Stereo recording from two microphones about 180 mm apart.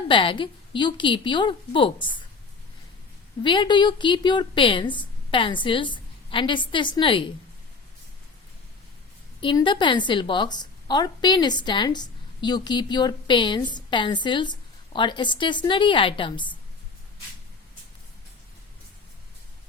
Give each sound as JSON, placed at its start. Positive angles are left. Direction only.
{"t": 0.1, "sound": "a woman's voice", "side_deg": 25}
{"t": 3.4, "sound": "a woman's voice", "side_deg": 25}
{"t": 9.4, "sound": "a woman's voice", "side_deg": 25}